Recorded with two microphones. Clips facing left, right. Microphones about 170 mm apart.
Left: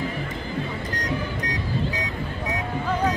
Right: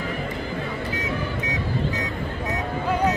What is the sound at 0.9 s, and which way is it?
Vehicle, 5° right (ahead or behind).